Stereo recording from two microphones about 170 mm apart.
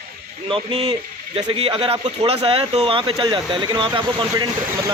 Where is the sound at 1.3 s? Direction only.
35° right (ahead or behind).